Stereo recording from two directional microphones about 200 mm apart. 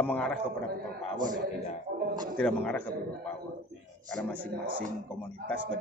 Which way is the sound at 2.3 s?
5° left (ahead or behind).